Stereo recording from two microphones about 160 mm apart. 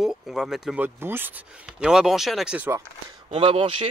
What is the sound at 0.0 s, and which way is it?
Speech, 5° right (ahead or behind).